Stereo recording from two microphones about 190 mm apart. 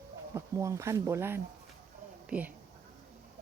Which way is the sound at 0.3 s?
15° right (ahead or behind).